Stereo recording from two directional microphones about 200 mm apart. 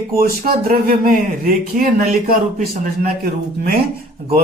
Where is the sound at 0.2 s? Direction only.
45° right (ahead or behind).